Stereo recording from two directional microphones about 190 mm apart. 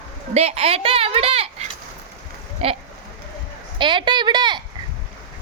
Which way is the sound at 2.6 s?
30° right (ahead or behind).